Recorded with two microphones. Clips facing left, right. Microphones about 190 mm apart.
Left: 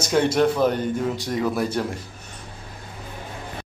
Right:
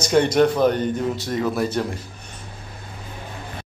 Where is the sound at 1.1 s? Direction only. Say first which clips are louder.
Right 1 dB; 15° left (ahead or behind).